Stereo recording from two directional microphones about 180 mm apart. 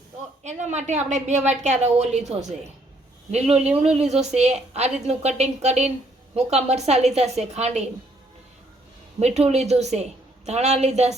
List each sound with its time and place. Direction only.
0.4 s a woman's voice: 40° right (ahead or behind)
9.2 s a woman's voice: 35° right (ahead or behind)